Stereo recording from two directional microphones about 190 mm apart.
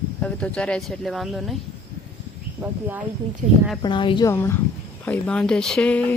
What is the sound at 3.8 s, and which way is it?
Speech, 25° left (ahead or behind).